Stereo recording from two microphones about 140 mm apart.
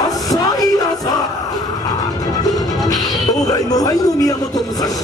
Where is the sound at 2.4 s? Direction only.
25° left (ahead or behind).